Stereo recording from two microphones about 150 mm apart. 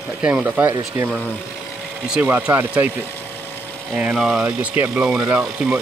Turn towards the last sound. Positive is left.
turn(degrees=-10)  # may be behind; listen again after turning